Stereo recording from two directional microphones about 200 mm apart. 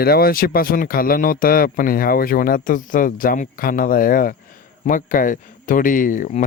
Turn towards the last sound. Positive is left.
turn(degrees=40)  # may be behind; listen again after turning